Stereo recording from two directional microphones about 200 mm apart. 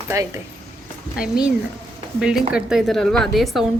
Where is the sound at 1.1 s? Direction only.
45° left (ahead or behind).